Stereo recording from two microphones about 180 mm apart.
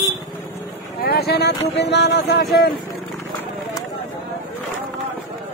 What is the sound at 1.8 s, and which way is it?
Music, 65° left (ahead or behind).